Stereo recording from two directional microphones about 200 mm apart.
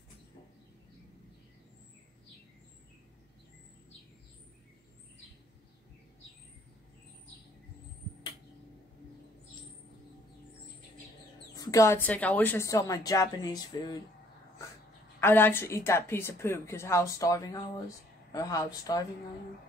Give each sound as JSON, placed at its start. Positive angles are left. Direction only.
{"t": 11.5, "sound": "a woman's voice", "side_deg": 15}
{"t": 15.1, "sound": "a woman's voice", "side_deg": 10}